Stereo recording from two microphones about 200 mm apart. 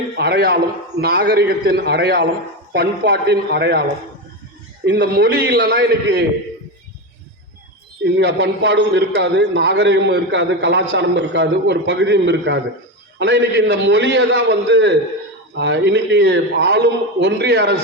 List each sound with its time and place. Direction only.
0.2 s a man's voice: 55° right (ahead or behind)
4.9 s a man's voice: 55° right (ahead or behind)
8.0 s a man's voice: 55° right (ahead or behind)